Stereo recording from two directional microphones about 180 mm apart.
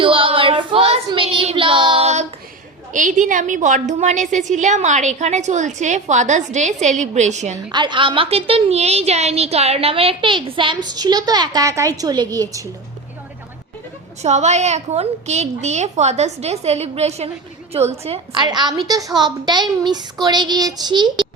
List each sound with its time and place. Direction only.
0.0 s child singing: 30° right (ahead or behind)
2.9 s a woman's voice: 45° right (ahead or behind)
7.7 s a woman's voice: 25° right (ahead or behind)
14.2 s a woman's voice: 40° right (ahead or behind)